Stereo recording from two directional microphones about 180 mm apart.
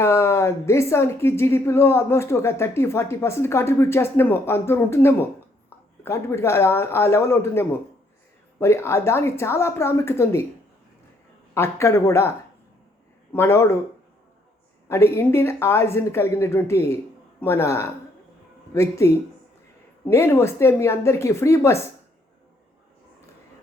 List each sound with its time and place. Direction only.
0.0 s a woman's voice: 15° left (ahead or behind)
11.5 s a woman's voice: 15° left (ahead or behind)
13.3 s a woman's voice: 15° left (ahead or behind)
14.8 s a woman's voice: 15° left (ahead or behind)